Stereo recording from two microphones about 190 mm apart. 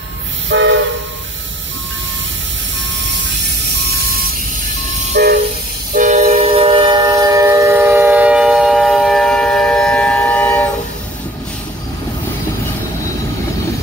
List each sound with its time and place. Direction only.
0.5 s train: 75° right (ahead or behind)
5.1 s train: 60° right (ahead or behind)
5.9 s train: 40° right (ahead or behind); by 10.7 s 10° left (ahead or behind)